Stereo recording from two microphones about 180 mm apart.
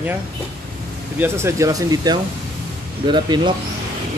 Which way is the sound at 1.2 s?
15° right (ahead or behind).